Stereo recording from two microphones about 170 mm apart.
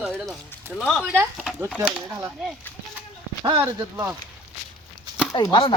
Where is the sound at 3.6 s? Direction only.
20° right (ahead or behind).